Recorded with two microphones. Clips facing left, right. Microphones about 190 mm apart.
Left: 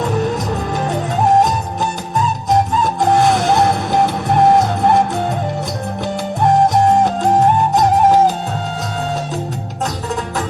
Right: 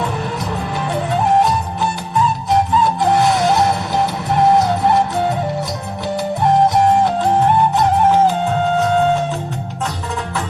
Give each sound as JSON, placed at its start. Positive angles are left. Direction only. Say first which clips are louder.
{"t": 0.0, "sound": "music", "louder": "left 4 dB", "side_deg": 45}
{"t": 7.0, "sound": "music", "louder": "left 1 dB", "side_deg": 45}